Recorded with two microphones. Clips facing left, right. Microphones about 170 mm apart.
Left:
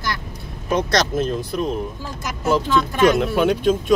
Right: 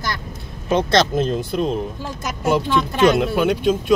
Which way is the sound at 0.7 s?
30° right (ahead or behind).